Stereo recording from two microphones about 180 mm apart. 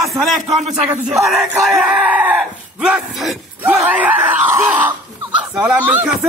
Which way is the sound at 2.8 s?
5° right (ahead or behind).